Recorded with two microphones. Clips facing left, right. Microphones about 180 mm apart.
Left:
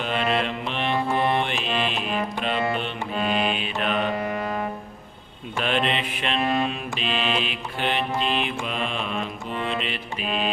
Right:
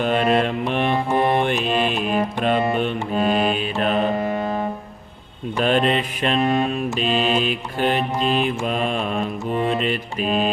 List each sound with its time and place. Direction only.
0.0 s mantra: 45° right (ahead or behind)
2.7 s music: 45° right (ahead or behind)
4.4 s music: 25° right (ahead or behind)
5.5 s mantra: 40° right (ahead or behind)